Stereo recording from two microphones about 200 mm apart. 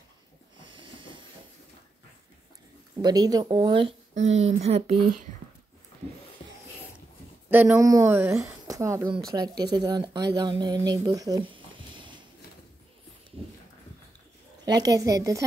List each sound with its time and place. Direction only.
0.7 s train: 25° right (ahead or behind)
3.0 s speech: 20° right (ahead or behind)
7.4 s speech: 10° right (ahead or behind); by 12.1 s 25° right (ahead or behind)
14.6 s speech: 20° right (ahead or behind)